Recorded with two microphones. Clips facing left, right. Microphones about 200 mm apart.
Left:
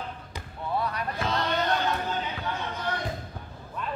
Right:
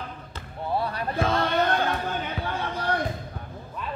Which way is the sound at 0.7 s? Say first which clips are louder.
Right 1 dB; 30° right (ahead or behind).